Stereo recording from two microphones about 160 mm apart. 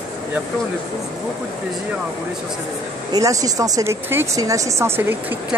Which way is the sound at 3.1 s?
20° right (ahead or behind).